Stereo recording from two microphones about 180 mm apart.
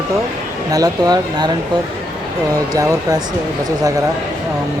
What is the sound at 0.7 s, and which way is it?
Speech, 20° right (ahead or behind).